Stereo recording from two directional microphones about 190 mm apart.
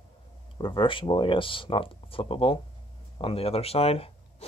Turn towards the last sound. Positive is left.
turn(degrees=30)  # may be behind; listen again after turning